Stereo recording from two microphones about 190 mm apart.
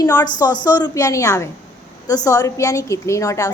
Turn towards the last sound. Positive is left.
turn(degrees=15)  # may be behind; listen again after turning